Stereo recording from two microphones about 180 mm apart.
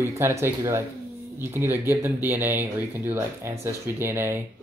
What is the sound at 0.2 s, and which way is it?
Speech, 15° right (ahead or behind).